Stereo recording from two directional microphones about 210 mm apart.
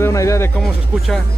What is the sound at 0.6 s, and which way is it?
Speech, centre (ahead or behind).